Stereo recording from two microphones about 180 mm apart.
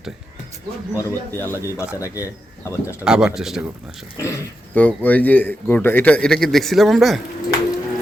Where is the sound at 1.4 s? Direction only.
15° right (ahead or behind).